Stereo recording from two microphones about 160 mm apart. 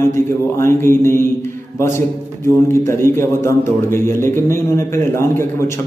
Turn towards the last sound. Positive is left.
turn(degrees=15)  # may be behind; listen again after turning